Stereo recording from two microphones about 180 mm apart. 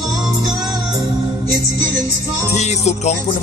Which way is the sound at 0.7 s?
20° right (ahead or behind).